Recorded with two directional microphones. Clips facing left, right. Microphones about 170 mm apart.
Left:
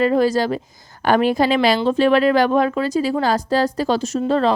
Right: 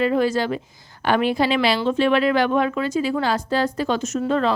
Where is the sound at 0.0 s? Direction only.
40° left (ahead or behind).